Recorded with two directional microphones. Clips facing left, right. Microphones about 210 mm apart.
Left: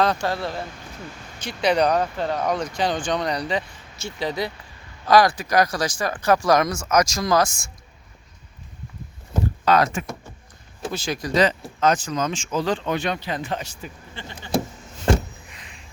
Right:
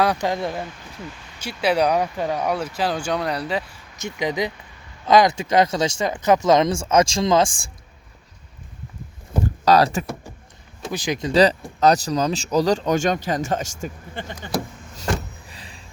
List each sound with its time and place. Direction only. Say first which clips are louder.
0.0 s speech: right 1 dB; 15° right (ahead or behind)
1.4 s speech: even; 5° right (ahead or behind)
4.0 s speech: right 3 dB; 15° right (ahead or behind)
9.6 s speech: right 3 dB; 35° right (ahead or behind)
10.9 s speech: right 4 dB; 15° right (ahead or behind)
11.8 s speech: right 3 dB; 35° right (ahead or behind)
15.4 s a sound: right 3 dB; 35° right (ahead or behind)